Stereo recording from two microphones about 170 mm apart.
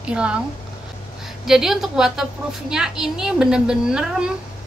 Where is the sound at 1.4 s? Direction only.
Centre (ahead or behind).